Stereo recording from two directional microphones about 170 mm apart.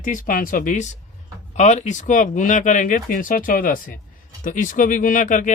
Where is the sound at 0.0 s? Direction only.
50° left (ahead or behind).